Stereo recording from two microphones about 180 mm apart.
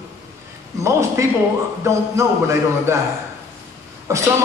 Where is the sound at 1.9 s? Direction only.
15° right (ahead or behind).